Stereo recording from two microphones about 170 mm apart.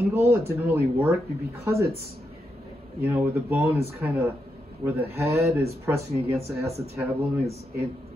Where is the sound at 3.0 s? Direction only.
15° right (ahead or behind).